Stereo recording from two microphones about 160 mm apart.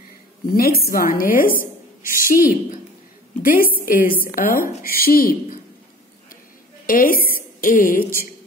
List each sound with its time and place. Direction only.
0.5 s a woman's voice: 65° left (ahead or behind)
6.9 s a woman's voice: 60° left (ahead or behind)